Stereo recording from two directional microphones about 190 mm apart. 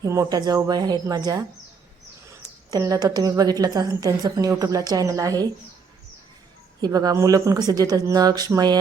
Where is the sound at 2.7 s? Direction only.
20° right (ahead or behind).